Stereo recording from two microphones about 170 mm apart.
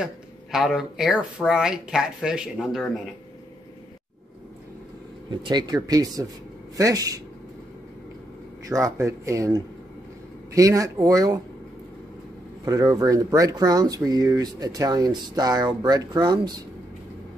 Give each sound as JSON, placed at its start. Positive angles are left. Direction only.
{"t": 0.0, "sound": "speech", "side_deg": 0}
{"t": 5.3, "sound": "speech", "side_deg": -25}
{"t": 8.6, "sound": "speech", "side_deg": -20}
{"t": 12.6, "sound": "speech", "side_deg": -20}